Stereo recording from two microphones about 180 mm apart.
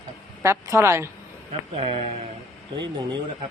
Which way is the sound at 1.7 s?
35° right (ahead or behind).